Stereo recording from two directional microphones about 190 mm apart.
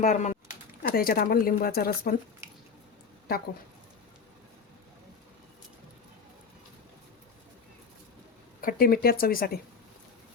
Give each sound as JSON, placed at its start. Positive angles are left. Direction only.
{"t": 0.0, "sound": "speech", "side_deg": 40}
{"t": 0.8, "sound": "speech", "side_deg": 50}
{"t": 8.6, "sound": "speech", "side_deg": 50}